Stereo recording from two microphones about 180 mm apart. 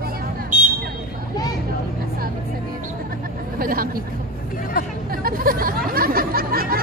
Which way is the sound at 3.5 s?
55° right (ahead or behind).